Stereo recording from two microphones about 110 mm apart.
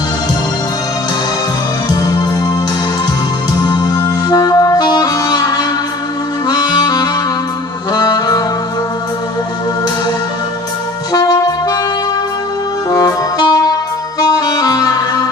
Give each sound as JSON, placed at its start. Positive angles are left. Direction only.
{"t": 1.9, "sound": "music", "side_deg": 35}
{"t": 3.6, "sound": "saxophone", "side_deg": 35}
{"t": 6.5, "sound": "music", "side_deg": 40}
{"t": 7.9, "sound": "saxophone", "side_deg": 35}
{"t": 11.1, "sound": "music", "side_deg": 35}
{"t": 12.9, "sound": "music", "side_deg": 35}